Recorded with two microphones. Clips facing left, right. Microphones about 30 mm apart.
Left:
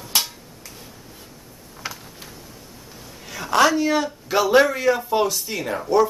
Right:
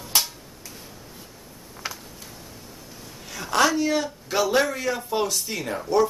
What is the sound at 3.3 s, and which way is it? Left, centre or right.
A man's voice, centre.